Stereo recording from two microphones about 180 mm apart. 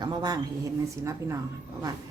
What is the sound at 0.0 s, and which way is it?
Speech, 25° right (ahead or behind).